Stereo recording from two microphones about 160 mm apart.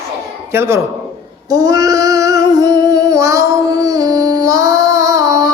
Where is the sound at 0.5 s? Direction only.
15° right (ahead or behind).